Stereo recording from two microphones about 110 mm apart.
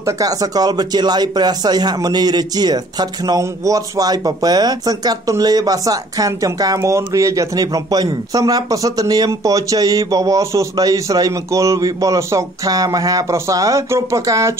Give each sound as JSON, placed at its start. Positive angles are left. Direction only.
{"t": 0.0, "sound": "speech", "side_deg": -35}